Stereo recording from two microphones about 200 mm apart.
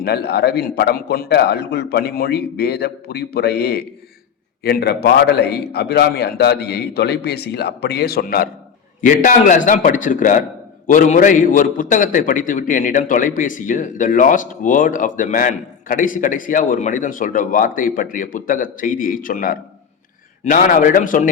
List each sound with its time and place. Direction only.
0.0 s a man's voice: 55° left (ahead or behind)